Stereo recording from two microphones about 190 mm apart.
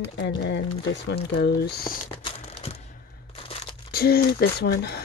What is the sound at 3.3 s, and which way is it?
Crunch, 30° left (ahead or behind).